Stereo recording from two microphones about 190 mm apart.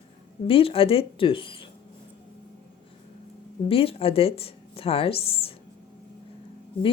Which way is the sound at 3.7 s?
30° left (ahead or behind).